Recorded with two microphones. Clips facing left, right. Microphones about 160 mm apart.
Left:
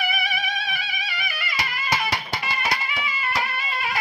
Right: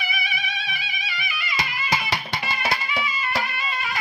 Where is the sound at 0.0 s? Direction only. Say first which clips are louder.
Left 4 dB; 50° left (ahead or behind).